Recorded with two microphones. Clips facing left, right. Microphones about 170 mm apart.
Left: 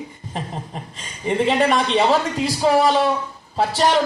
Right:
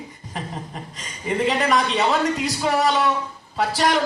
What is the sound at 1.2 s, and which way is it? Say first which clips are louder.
A man's voice: left 3 dB; 30° left (ahead or behind).